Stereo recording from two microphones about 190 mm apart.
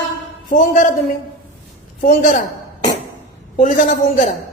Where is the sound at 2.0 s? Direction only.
45° left (ahead or behind).